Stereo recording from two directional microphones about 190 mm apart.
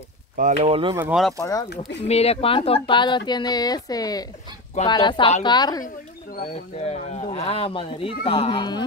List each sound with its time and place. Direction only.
0.4 s speech: 35° right (ahead or behind)
0.9 s speech: 10° right (ahead or behind)
1.4 s speech: 20° left (ahead or behind)
2.0 s speech: 35° left (ahead or behind)
6.5 s speech: 35° left (ahead or behind)